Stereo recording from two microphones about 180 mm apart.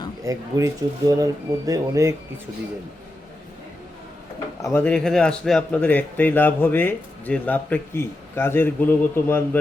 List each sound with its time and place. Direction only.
0.3 s speech: 20° right (ahead or behind)
4.7 s speech: 10° left (ahead or behind)